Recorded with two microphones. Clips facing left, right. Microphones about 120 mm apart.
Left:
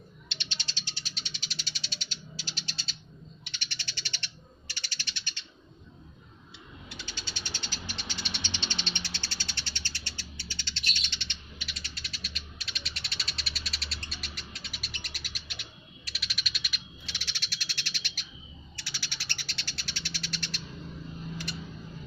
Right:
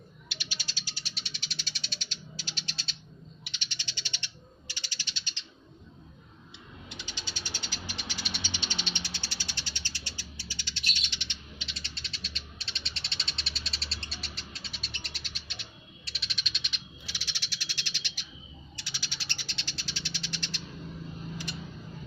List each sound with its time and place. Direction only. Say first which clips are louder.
0.3 s cat: even; 5° right (ahead or behind)
3.4 s cat: left 1 dB; 15° right (ahead or behind)
4.7 s bird: left 1 dB; 15° right (ahead or behind)
6.8 s cat: even; 15° right (ahead or behind)
11.7 s cat: even; 30° right (ahead or behind)
16.0 s bird: left 1 dB; 30° right (ahead or behind)
17.1 s frog: left 1 dB; 15° right (ahead or behind)
18.8 s cat: left 1 dB; 15° right (ahead or behind)